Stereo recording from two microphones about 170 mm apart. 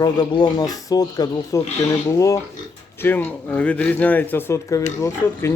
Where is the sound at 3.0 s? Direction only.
10° left (ahead or behind).